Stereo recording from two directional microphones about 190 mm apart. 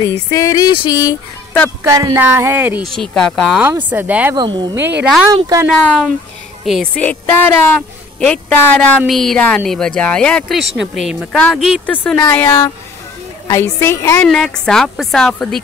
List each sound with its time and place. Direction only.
0.0 s female singing: 15° left (ahead or behind)
1.8 s speech: 15° right (ahead or behind)
2.9 s speech: centre (ahead or behind)
3.6 s speech: 10° right (ahead or behind)
4.4 s speech: 25° right (ahead or behind)
5.7 s speech: centre (ahead or behind)